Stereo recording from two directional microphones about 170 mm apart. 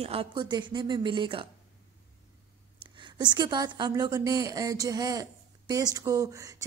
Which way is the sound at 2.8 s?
25° right (ahead or behind).